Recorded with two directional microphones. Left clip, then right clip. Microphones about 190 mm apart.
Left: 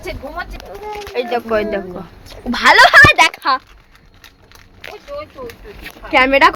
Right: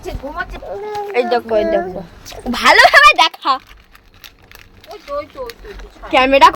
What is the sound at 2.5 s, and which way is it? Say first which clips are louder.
Speech: even; 5° right (ahead or behind).